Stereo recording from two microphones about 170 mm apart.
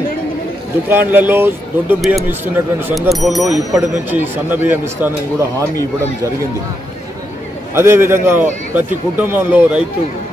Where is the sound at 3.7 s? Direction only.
10° right (ahead or behind).